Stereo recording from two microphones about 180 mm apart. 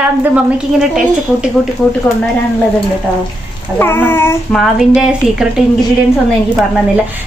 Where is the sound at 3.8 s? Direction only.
10° left (ahead or behind).